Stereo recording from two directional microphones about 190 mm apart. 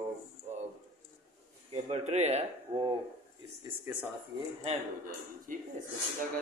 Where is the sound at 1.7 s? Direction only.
35° right (ahead or behind).